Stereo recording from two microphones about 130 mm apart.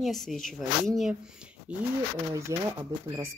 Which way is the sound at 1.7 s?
10° right (ahead or behind).